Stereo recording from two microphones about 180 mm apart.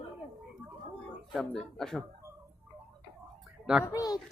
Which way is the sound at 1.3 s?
Centre (ahead or behind).